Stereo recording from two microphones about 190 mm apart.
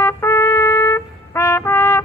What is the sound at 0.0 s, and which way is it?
Trumpet, 15° left (ahead or behind).